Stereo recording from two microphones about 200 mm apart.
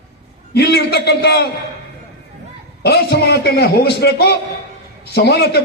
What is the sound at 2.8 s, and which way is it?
A man's voice, 55° left (ahead or behind).